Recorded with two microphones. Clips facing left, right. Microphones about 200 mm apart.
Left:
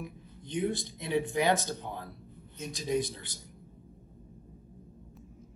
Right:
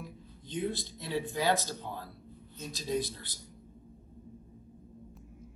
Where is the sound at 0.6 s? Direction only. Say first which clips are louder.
Left 3 dB; 20° left (ahead or behind).